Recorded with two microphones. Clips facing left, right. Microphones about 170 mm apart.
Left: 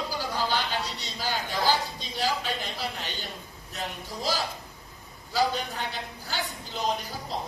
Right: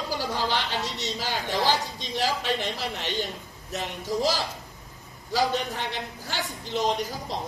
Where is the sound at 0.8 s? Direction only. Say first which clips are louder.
Right 3 dB; 90° right.